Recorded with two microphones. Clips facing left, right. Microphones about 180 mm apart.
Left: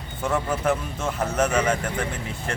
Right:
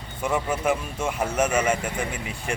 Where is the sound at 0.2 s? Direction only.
10° right (ahead or behind).